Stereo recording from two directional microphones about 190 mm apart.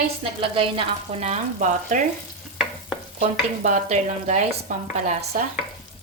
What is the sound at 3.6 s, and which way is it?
Speech, 40° right (ahead or behind).